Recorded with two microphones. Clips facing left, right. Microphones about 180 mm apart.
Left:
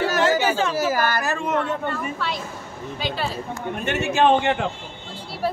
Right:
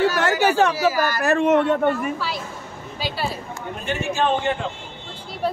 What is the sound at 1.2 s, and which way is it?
Speech, 60° right (ahead or behind).